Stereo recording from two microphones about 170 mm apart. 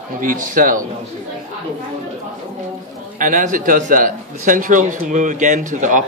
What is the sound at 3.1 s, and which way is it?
A man's voice, 50° right (ahead or behind).